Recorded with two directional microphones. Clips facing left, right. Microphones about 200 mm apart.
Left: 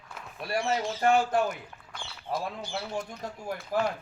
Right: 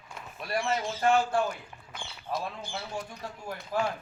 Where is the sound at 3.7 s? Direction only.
45° left (ahead or behind).